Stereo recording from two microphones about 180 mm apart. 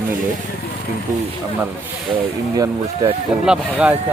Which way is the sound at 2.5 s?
20° right (ahead or behind).